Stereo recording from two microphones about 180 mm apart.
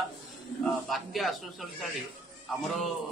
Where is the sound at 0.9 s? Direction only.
Centre (ahead or behind).